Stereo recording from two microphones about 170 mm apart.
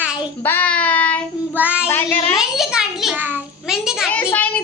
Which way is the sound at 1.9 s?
10° left (ahead or behind).